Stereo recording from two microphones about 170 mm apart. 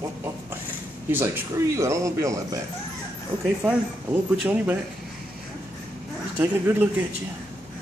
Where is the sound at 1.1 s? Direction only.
15° right (ahead or behind).